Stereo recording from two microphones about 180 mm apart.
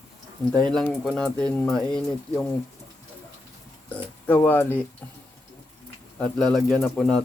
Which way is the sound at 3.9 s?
10° left (ahead or behind).